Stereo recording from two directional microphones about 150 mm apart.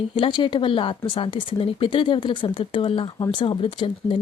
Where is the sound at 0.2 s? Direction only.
30° left (ahead or behind).